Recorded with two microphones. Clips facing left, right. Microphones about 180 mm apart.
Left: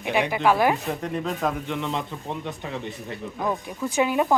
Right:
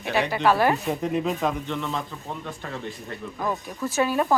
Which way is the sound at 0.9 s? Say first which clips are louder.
Right 3 dB; 5° right (ahead or behind).